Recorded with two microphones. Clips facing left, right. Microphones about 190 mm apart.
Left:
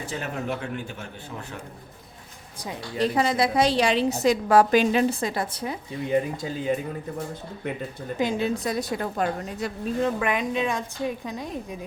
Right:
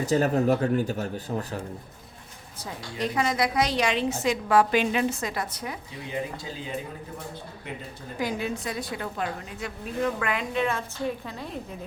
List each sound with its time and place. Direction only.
0.0 s speech: 40° right (ahead or behind)
3.0 s a woman's voice: 30° left (ahead or behind)
8.2 s a woman's voice: 25° left (ahead or behind)
10.2 s a woman's voice: 20° left (ahead or behind)